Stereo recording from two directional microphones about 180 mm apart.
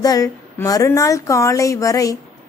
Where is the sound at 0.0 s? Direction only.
20° left (ahead or behind).